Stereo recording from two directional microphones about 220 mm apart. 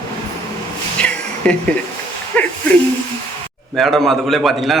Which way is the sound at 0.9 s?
5° left (ahead or behind).